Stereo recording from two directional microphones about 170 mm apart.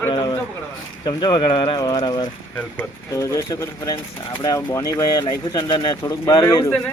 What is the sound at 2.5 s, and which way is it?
Speech, 10° left (ahead or behind).